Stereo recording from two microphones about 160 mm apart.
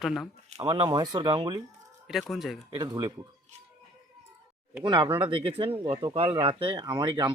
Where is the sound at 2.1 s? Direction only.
Centre (ahead or behind).